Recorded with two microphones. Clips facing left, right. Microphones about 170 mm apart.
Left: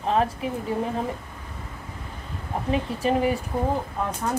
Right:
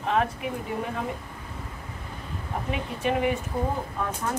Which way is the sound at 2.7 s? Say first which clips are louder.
Left 4 dB; 35° left (ahead or behind).